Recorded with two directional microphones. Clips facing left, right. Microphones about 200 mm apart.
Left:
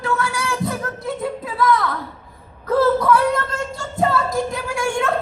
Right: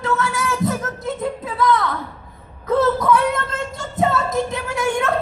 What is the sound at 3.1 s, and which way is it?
Child singing, 20° right (ahead or behind).